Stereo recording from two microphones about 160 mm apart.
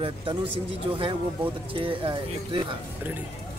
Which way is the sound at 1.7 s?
35° right (ahead or behind).